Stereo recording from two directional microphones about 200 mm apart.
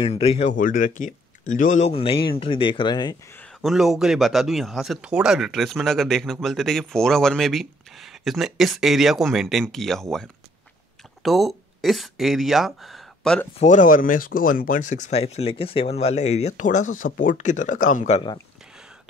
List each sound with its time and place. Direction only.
0.0 s speech: 30° left (ahead or behind)
3.3 s a man's voice: centre (ahead or behind)
11.2 s speech: centre (ahead or behind)
13.6 s speech: 40° left (ahead or behind)